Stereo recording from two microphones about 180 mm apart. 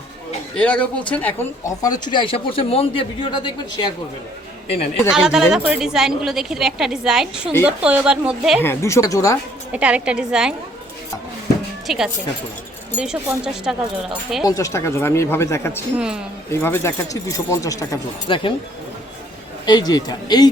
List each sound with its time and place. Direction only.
0.5 s speech: 5° left (ahead or behind); by 3.9 s 25° left (ahead or behind)
5.1 s a woman's voice: 5° right (ahead or behind)
8.6 s speech: 15° left (ahead or behind)
9.7 s a woman's voice: 5° right (ahead or behind)
11.9 s a woman's voice: 5° right (ahead or behind)
14.4 s speech: 20° left (ahead or behind)
16.0 s a woman's voice: 5° right (ahead or behind)
16.5 s speech: 15° left (ahead or behind)
19.6 s speech: 25° left (ahead or behind)